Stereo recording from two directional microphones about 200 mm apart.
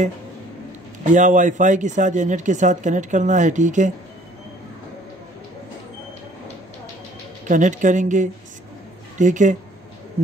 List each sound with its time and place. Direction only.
1.1 s speech: 40° right (ahead or behind)
7.4 s speech: 40° right (ahead or behind)